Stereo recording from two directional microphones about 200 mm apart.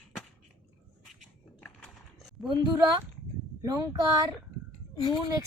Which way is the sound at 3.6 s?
20° right (ahead or behind).